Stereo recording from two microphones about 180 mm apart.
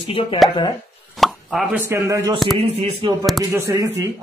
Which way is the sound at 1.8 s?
15° right (ahead or behind).